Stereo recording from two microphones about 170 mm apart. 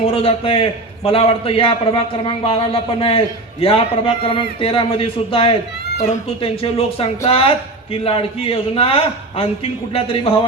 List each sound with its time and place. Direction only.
0.0 s a man's voice: 35° left (ahead or behind)